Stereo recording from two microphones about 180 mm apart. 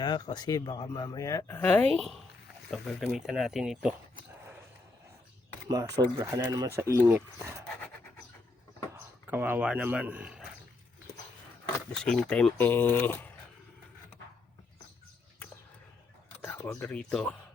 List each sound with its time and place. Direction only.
0.0 s speech: 25° left (ahead or behind); by 3.9 s 5° right (ahead or behind)
5.6 s speech: 20° right (ahead or behind)
8.9 s speech: 15° right (ahead or behind)
12.0 s speech: 5° left (ahead or behind)
16.4 s speech: 10° left (ahead or behind)